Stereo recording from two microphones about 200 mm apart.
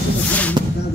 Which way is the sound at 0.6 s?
20° right (ahead or behind).